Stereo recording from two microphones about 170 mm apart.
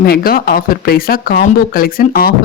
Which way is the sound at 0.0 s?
65° left (ahead or behind).